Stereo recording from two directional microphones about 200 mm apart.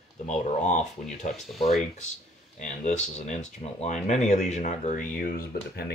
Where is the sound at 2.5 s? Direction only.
35° left (ahead or behind).